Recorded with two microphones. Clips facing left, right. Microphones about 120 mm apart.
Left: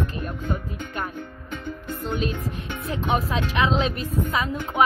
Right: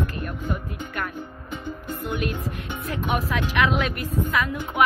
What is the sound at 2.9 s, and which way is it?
A woman's voice, 25° left (ahead or behind).